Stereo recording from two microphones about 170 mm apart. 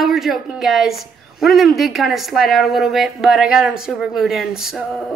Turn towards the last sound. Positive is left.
turn(degrees=0)  # may be behind; listen again after turning